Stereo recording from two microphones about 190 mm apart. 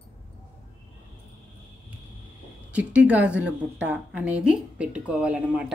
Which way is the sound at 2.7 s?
5° right (ahead or behind).